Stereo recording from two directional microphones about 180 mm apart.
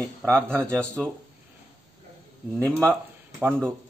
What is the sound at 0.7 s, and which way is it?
Speech, 5° left (ahead or behind).